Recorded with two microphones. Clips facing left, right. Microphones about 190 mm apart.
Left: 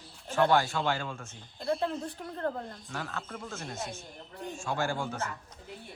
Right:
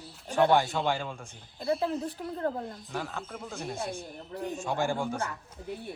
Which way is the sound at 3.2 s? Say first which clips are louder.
Right 1 dB; 5° right (ahead or behind).